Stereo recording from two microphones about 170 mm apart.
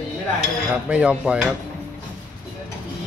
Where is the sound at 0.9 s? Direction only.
5° right (ahead or behind).